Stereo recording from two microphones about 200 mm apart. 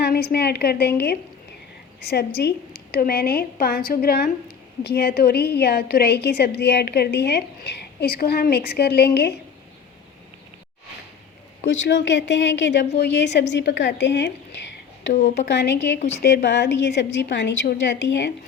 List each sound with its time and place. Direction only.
0.0 s a woman's voice: 50° left (ahead or behind)
11.6 s a woman's voice: 60° left (ahead or behind)
16.0 s a woman's voice: 35° left (ahead or behind)
16.2 s a woman's voice: 60° left (ahead or behind)